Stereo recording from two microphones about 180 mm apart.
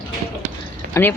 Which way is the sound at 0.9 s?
10° left (ahead or behind).